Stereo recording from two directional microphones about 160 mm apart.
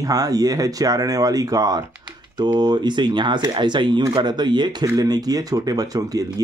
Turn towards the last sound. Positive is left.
turn(degrees=-25)  # may be behind; listen again after turning